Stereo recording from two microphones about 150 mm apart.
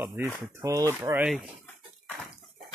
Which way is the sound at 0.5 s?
20° right (ahead or behind).